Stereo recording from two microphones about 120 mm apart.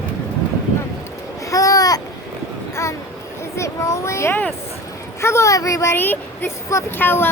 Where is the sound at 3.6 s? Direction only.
25° left (ahead or behind).